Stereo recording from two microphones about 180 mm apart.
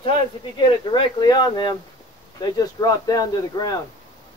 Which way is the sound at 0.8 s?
25° left (ahead or behind).